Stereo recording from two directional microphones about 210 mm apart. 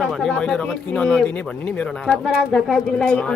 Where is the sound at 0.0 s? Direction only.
Centre (ahead or behind).